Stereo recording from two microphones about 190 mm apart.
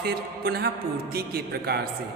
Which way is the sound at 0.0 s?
55° right (ahead or behind).